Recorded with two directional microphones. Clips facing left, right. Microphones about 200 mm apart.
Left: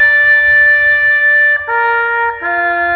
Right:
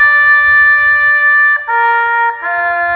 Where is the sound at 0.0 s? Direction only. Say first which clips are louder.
Even; 35° left (ahead or behind).